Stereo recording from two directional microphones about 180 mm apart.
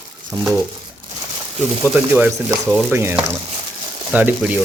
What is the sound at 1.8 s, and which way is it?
Speech, 10° right (ahead or behind).